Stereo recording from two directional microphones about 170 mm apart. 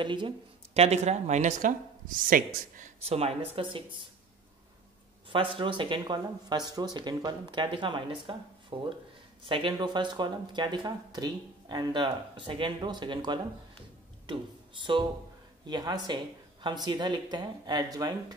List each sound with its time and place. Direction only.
0.0 s speech: 30° right (ahead or behind)
0.7 s speech: 40° right (ahead or behind)
3.1 s speech: 35° right (ahead or behind)
5.3 s speech: 30° right (ahead or behind)